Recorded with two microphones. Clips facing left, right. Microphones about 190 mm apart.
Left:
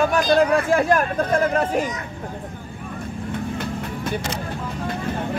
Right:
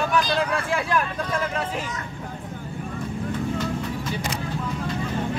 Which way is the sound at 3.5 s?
60° left (ahead or behind).